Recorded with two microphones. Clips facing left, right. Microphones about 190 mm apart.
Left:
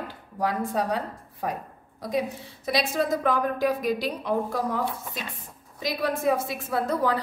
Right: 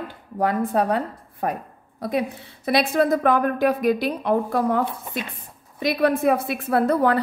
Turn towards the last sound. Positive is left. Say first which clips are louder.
# right 6 dB
turn(degrees=-60)  # may be behind; listen again after turning